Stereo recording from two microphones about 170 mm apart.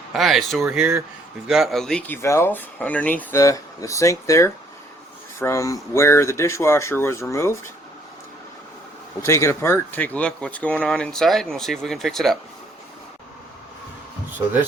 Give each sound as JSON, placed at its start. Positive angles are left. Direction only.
{"t": 0.1, "sound": "speech", "side_deg": 0}
{"t": 9.2, "sound": "speech", "side_deg": 15}